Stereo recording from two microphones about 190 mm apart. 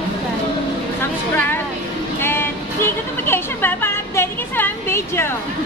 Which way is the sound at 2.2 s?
10° left (ahead or behind).